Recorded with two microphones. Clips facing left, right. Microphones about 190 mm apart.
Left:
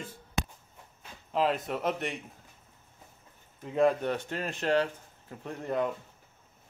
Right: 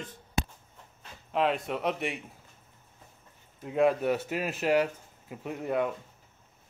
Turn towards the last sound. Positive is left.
turn(degrees=-5)  # may be behind; listen again after turning